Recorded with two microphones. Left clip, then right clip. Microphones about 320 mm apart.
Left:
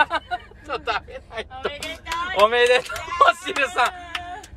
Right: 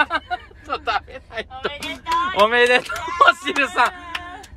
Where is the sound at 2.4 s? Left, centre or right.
Right.